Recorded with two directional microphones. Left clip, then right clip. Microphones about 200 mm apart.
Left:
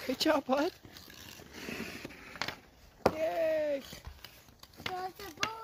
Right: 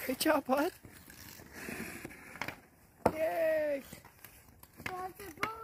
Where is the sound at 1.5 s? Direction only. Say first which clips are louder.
Left 1 dB; 25° right (ahead or behind).